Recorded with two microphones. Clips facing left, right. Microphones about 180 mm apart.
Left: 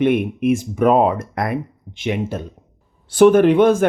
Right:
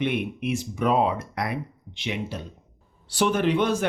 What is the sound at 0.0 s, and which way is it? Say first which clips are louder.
Speech: left 9 dB; 50° left (ahead or behind).